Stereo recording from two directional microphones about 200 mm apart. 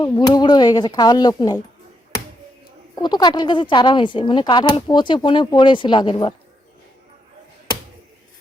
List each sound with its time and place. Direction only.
0.0 s speech: 20° left (ahead or behind)
2.9 s speech: 20° left (ahead or behind)